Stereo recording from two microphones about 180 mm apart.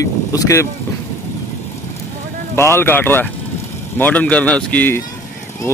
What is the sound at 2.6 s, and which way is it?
Speech, 15° left (ahead or behind).